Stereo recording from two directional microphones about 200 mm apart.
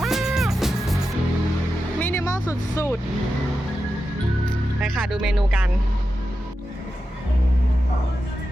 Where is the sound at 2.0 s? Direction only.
10° left (ahead or behind).